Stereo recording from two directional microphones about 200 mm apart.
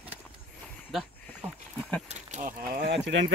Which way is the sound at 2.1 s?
35° right (ahead or behind).